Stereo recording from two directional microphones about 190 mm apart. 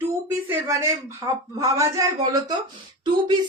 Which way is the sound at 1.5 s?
15° right (ahead or behind).